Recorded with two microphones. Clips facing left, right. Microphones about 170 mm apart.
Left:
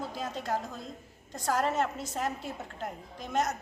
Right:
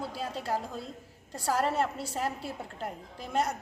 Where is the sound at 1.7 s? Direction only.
30° right (ahead or behind).